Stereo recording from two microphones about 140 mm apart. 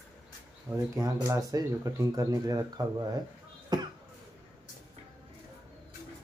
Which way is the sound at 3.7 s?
30° right (ahead or behind).